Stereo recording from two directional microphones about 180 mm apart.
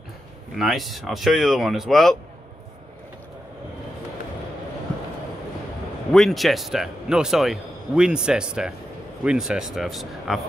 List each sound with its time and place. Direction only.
0.6 s speech: centre (ahead or behind)
6.1 s speech: centre (ahead or behind)